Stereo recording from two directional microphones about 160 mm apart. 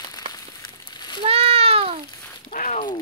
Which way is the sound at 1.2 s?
40° right (ahead or behind).